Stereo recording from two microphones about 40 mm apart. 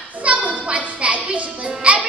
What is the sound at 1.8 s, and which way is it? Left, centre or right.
Music, right.